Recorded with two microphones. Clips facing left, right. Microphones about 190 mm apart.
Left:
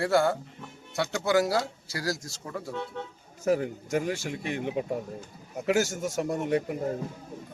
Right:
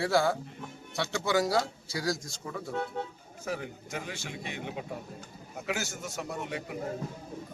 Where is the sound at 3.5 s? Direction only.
45° left (ahead or behind).